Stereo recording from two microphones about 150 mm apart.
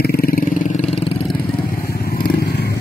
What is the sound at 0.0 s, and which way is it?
Vehicle, 85° left.